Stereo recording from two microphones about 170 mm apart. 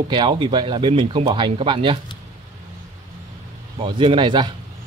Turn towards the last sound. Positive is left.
turn(degrees=-25)  # may be behind; listen again after turning